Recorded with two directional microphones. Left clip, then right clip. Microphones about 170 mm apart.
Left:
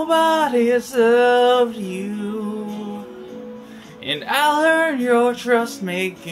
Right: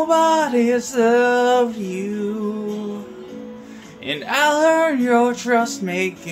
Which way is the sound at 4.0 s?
5° right (ahead or behind).